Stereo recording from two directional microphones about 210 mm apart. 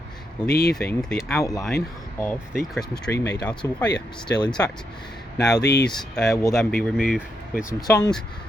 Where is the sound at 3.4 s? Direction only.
5° left (ahead or behind).